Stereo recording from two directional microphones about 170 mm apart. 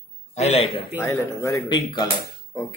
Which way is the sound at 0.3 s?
40° left (ahead or behind).